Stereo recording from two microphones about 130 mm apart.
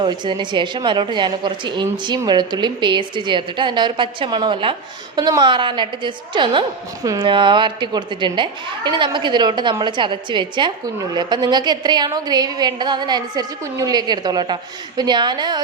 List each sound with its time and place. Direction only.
0.0 s a woman's voice: 35° right (ahead or behind)
7.0 s a woman's voice: 25° right (ahead or behind)
7.3 s a woman's voice: 40° right (ahead or behind)